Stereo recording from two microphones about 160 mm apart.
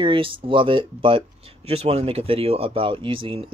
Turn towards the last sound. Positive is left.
turn(degrees=-35)  # may be behind; listen again after turning